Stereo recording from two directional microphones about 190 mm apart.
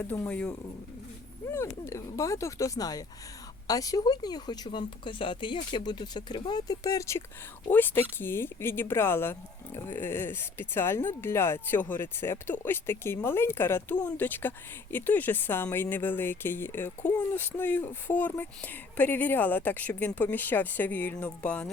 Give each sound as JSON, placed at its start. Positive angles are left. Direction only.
{"t": 0.0, "sound": "speech", "side_deg": 10}